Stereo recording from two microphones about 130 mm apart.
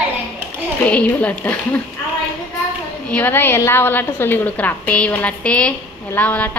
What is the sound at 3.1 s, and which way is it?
A woman's voice, 15° left (ahead or behind).